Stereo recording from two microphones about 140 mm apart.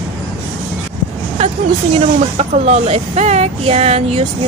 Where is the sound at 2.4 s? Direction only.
50° right (ahead or behind).